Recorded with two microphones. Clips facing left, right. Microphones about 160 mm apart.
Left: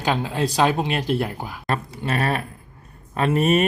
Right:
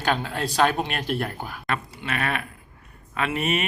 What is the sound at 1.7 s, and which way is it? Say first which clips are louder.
Speech: left 5 dB; 40° left (ahead or behind).